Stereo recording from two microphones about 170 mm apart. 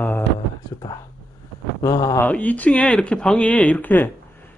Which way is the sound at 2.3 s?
10° left (ahead or behind).